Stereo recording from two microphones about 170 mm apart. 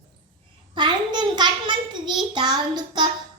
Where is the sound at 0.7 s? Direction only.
25° right (ahead or behind).